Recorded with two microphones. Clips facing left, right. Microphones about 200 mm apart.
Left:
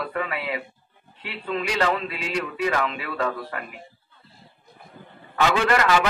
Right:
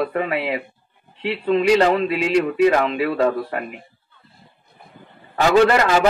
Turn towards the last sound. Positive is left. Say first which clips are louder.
# right 6 dB
turn(degrees=-35)  # may be behind; listen again after turning